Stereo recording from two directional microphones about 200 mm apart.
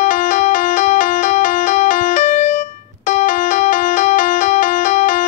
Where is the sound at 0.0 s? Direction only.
40° left (ahead or behind).